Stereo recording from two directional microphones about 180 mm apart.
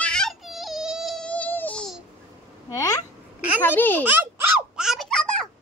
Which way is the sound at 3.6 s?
10° left (ahead or behind).